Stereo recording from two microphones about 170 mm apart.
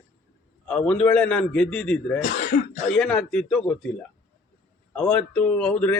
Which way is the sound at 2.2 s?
70° left (ahead or behind).